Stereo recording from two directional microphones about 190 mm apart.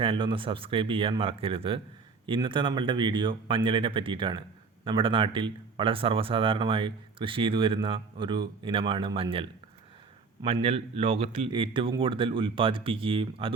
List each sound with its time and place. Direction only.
0.0 s speech: 25° right (ahead or behind)